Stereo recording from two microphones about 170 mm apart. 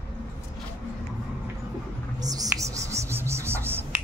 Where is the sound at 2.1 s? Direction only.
20° right (ahead or behind).